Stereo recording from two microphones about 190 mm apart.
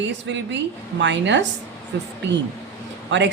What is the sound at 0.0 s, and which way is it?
A woman's voice, 70° right (ahead or behind).